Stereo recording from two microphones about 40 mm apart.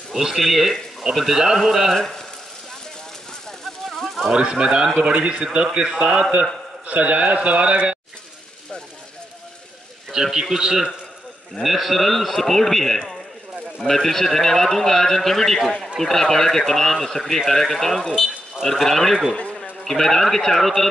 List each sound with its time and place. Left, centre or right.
0.1 s a man's voice: centre
2.0 s speech: centre
3.8 s a sound: centre
4.3 s speech: right
5.0 s a man's voice: right
5.4 s a man's voice: right
10.2 s a man's voice: centre
11.6 s speech: centre
19.3 s a sound: left
19.8 s speech: centre